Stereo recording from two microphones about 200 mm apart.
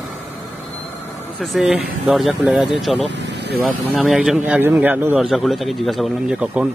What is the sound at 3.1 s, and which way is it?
Vehicle, 60° right (ahead or behind).